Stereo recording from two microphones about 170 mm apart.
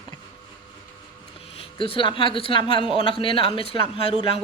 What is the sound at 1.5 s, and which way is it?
Speech, 30° left (ahead or behind).